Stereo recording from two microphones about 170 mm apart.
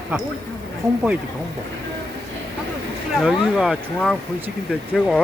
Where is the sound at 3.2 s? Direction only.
Centre (ahead or behind).